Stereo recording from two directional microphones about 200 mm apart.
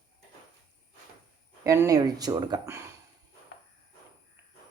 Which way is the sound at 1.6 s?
15° right (ahead or behind).